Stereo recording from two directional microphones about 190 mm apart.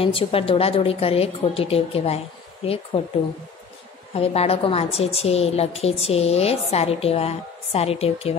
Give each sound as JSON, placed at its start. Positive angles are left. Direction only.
{"t": 0.0, "sound": "a woman's voice", "side_deg": 30}
{"t": 4.1, "sound": "a woman's voice", "side_deg": 30}